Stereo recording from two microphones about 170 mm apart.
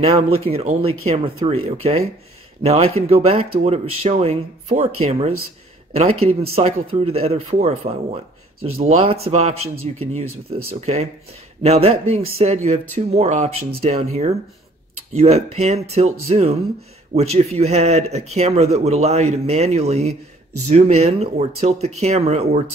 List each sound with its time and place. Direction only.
0.0 s speech: 35° right (ahead or behind)
11.6 s speech: 40° right (ahead or behind)